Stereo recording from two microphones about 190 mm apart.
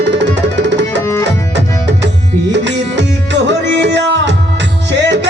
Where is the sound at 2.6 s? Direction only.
70° right (ahead or behind).